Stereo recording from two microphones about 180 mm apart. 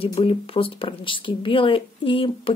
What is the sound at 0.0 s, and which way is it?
Speech, 30° left (ahead or behind).